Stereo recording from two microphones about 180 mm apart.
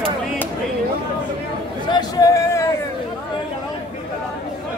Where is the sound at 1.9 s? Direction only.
20° left (ahead or behind).